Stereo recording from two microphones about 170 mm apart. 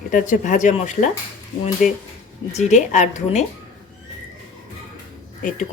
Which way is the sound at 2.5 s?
40° left (ahead or behind).